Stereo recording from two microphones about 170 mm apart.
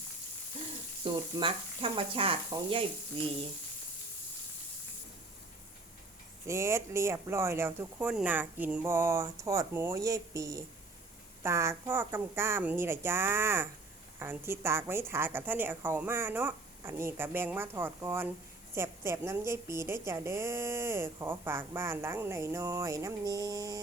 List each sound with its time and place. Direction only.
1.0 s speech: 30° right (ahead or behind)
6.5 s a woman's voice: 15° right (ahead or behind)